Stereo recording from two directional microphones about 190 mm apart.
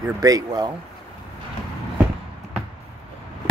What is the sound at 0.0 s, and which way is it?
Speech, 20° right (ahead or behind).